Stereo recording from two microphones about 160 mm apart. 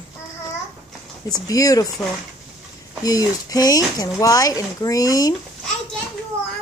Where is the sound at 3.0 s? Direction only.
25° left (ahead or behind).